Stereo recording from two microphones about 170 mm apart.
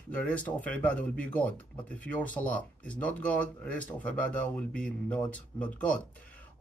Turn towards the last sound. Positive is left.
turn(degrees=10)  # may be behind; listen again after turning